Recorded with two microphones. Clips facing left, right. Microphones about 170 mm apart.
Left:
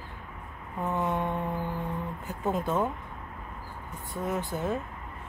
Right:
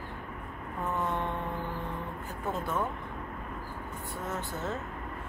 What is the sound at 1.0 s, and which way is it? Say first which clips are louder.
Mantra: left 4 dB; 15° left (ahead or behind).